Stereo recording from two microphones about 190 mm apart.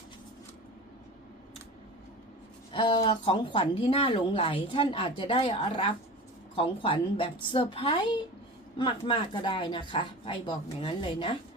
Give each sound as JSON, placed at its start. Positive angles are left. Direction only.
{"t": 2.7, "sound": "speech", "side_deg": 25}